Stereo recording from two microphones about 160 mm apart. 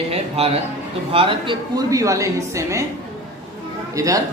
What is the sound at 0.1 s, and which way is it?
A man's voice, 40° right (ahead or behind).